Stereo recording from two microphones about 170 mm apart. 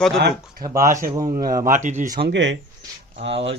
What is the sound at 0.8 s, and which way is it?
Speech, 50° right (ahead or behind).